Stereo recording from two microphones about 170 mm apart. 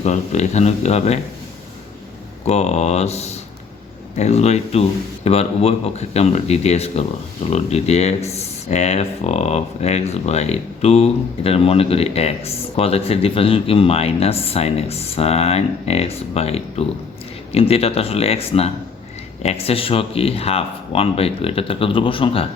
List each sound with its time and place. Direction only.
0.0 s speech: 40° left (ahead or behind)
2.4 s speech: 40° left (ahead or behind)